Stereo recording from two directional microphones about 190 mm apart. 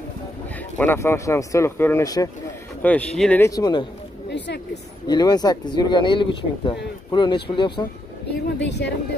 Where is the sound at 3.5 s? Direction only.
20° left (ahead or behind).